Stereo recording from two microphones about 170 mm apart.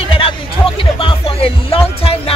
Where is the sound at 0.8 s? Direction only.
30° left (ahead or behind).